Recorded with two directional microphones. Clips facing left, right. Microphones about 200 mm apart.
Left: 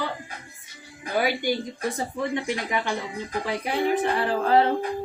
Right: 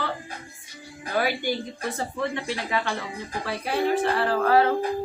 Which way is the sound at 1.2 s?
15° left (ahead or behind).